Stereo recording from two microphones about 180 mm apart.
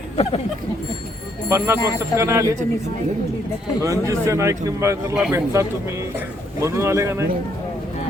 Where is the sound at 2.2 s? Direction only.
15° right (ahead or behind).